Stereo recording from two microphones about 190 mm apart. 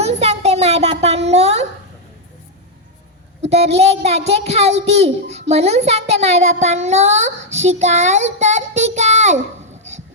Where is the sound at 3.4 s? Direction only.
35° right (ahead or behind).